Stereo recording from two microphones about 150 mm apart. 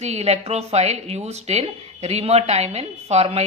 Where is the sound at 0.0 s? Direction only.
45° right (ahead or behind).